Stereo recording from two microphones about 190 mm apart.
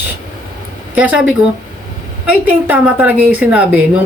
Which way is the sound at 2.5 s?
10° right (ahead or behind).